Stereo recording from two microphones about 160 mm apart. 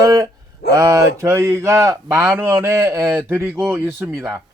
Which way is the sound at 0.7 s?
20° right (ahead or behind).